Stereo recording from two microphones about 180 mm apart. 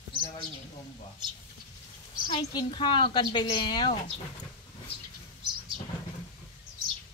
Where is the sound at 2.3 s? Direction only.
20° left (ahead or behind).